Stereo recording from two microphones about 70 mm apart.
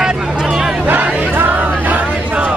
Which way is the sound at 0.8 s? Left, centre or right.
Right.